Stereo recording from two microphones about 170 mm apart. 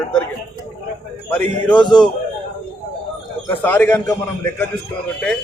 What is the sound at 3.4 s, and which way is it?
Speech, 10° left (ahead or behind).